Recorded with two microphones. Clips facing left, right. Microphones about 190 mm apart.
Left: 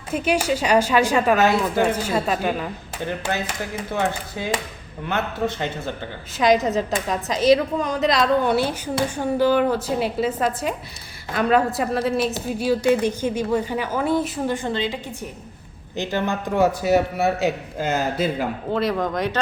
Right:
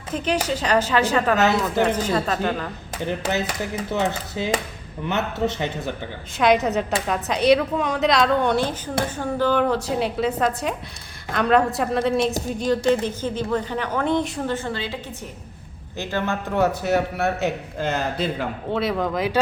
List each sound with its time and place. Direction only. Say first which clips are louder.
0.1 s speech: left 2 dB; 10° left (ahead or behind)
3.1 s speech: right 2 dB; 20° right (ahead or behind)
6.3 s speech: even; centre (ahead or behind)
14.5 s speech: left 3 dB; 20° left (ahead or behind)
16.8 s speech: left 3 dB; 5° left (ahead or behind)